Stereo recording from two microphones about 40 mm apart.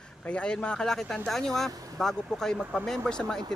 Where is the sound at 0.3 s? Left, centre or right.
Left.